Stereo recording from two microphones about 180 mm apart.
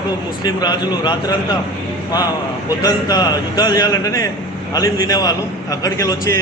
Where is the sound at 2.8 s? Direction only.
20° left (ahead or behind).